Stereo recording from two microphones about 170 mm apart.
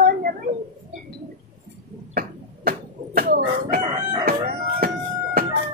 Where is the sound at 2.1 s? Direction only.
60° right (ahead or behind).